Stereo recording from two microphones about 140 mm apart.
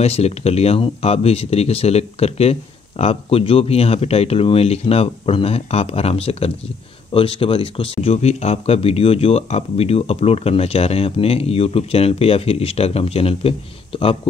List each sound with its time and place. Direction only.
0.0 s speech: 50° left (ahead or behind)